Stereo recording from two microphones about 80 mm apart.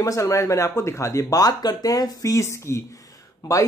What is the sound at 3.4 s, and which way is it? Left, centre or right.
Speech, left.